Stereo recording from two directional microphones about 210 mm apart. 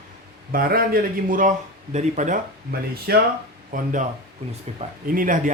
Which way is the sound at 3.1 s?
50° right (ahead or behind).